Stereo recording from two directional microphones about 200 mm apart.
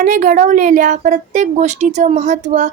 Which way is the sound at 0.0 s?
40° right (ahead or behind).